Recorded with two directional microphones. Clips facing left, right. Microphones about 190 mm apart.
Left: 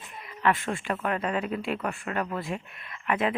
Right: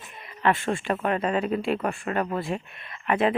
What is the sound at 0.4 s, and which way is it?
Speech, 30° right (ahead or behind).